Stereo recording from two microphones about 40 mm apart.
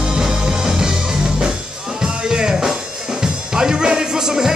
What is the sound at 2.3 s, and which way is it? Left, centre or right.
Music, centre.